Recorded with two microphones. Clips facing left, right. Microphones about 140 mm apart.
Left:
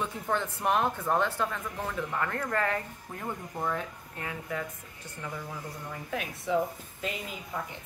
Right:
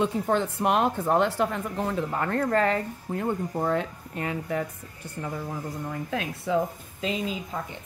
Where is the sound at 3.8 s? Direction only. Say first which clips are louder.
Right 7 dB; 80° right.